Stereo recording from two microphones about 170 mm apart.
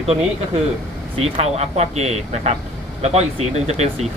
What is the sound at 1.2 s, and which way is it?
Speech, 40° right (ahead or behind).